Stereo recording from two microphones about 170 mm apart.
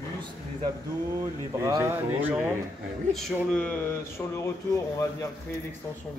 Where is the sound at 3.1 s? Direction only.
5° left (ahead or behind).